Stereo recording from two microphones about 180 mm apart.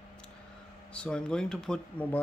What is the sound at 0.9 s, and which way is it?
Speech, 5° left (ahead or behind).